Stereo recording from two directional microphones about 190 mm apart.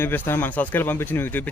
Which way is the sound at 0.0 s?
10° left (ahead or behind).